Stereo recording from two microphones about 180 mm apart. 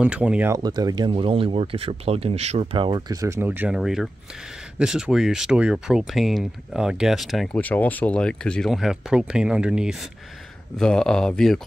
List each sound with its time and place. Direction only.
0.0 s speech: 5° right (ahead or behind)
0.6 s speech: 20° right (ahead or behind); by 11.6 s 5° left (ahead or behind)